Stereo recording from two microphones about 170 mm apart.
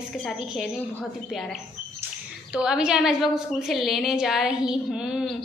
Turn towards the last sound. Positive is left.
turn(degrees=-5)  # may be behind; listen again after turning